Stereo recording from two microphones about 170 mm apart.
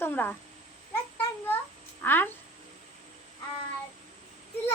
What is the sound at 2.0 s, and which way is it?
Speech, 10° left (ahead or behind).